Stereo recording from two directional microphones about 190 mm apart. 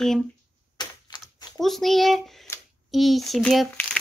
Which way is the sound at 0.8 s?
20° left (ahead or behind).